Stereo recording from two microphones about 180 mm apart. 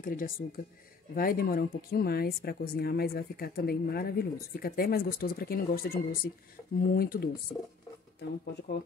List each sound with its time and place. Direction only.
0.0 s speech: 50° left (ahead or behind)
8.2 s speech: 70° left (ahead or behind)